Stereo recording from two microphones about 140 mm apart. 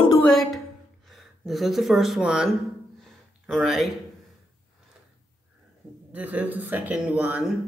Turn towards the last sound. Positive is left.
turn(degrees=-10)  # may be behind; listen again after turning